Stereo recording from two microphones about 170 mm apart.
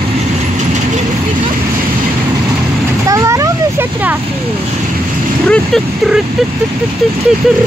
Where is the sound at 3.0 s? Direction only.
20° right (ahead or behind).